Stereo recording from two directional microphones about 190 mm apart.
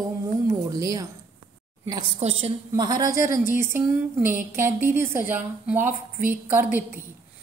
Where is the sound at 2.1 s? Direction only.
35° right (ahead or behind).